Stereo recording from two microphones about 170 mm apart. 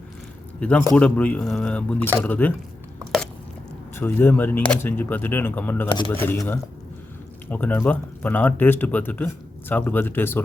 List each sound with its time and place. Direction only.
0.6 s speech: 10° left (ahead or behind)
3.9 s speech: 10° left (ahead or behind)